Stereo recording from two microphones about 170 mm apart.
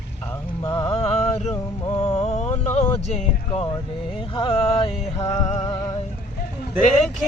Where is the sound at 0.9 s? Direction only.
35° left (ahead or behind).